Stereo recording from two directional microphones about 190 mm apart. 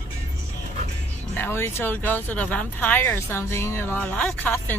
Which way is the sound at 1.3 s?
10° left (ahead or behind).